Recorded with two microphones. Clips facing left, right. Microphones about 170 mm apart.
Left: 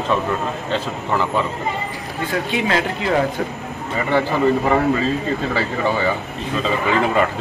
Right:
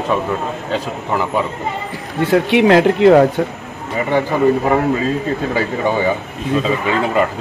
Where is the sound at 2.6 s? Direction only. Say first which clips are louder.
Right 11 dB; 50° right (ahead or behind).